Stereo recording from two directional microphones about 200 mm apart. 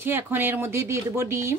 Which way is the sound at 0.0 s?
10° right (ahead or behind).